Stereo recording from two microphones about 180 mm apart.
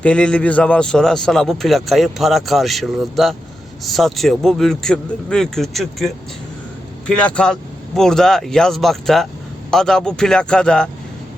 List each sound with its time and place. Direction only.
0.0 s speech: 5° left (ahead or behind)
7.1 s speech: 5° left (ahead or behind)